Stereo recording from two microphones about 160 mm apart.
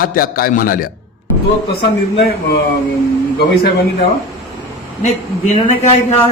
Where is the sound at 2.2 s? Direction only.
75° left (ahead or behind).